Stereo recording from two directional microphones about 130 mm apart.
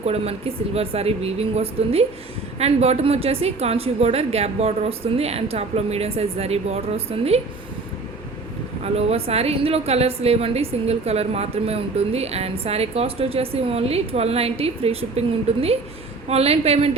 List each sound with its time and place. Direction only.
0.0 s a woman's voice: 50° right (ahead or behind)
8.8 s a woman's voice: 55° right (ahead or behind)